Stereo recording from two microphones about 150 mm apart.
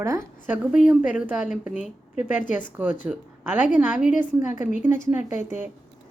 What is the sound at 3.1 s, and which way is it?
A woman's voice, 10° right (ahead or behind).